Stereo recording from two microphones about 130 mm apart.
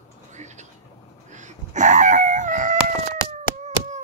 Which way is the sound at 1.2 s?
70° right (ahead or behind).